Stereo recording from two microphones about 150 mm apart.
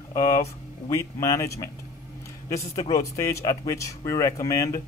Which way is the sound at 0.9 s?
20° left (ahead or behind).